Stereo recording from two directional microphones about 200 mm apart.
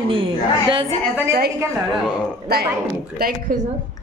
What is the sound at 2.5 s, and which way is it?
A woman's voice, 50° right (ahead or behind).